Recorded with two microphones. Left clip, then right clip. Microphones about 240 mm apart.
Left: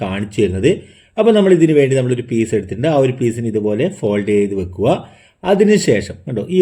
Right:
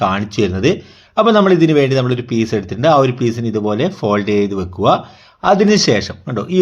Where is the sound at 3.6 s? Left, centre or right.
Right.